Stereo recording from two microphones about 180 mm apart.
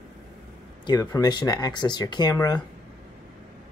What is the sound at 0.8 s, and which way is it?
Speech, 20° left (ahead or behind).